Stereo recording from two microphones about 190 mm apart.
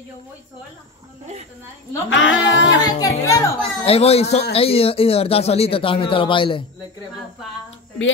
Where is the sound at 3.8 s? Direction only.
30° left (ahead or behind).